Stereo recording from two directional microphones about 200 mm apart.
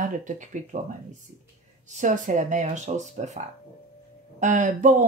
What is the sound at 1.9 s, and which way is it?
Speech, 35° right (ahead or behind).